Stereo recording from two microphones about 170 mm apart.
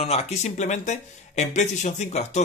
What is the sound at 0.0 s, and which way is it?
Speech, 40° left (ahead or behind).